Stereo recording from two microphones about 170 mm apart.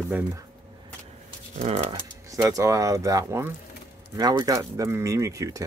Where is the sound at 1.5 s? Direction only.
40° right (ahead or behind).